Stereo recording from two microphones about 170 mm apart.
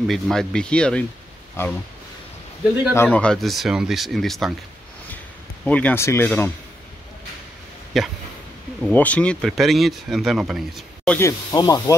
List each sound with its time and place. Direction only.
0.0 s speech: centre (ahead or behind)
2.9 s speech: 10° left (ahead or behind)
5.7 s speech: 10° left (ahead or behind)
7.9 s speech: centre (ahead or behind)
11.1 s speech: 20° left (ahead or behind)